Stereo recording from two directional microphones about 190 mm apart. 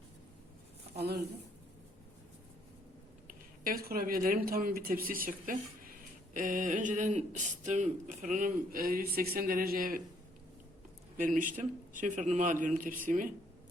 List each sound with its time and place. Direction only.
0.9 s a woman's voice: 60° right (ahead or behind)
3.2 s speech: 50° right (ahead or behind)
11.2 s speech: 45° right (ahead or behind)